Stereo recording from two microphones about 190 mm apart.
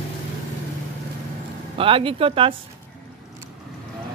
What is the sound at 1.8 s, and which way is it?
Speech, 30° right (ahead or behind).